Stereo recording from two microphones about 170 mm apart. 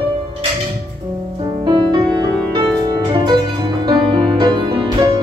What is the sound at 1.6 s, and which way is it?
Music, 25° right (ahead or behind).